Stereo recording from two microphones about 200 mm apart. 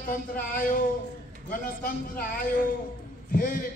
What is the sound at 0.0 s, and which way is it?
A man's voice, 45° left (ahead or behind).